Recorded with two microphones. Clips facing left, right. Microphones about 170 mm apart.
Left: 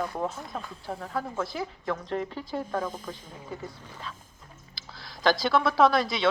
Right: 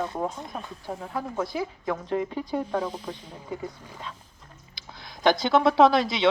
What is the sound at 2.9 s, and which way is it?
Speech, 50° left (ahead or behind).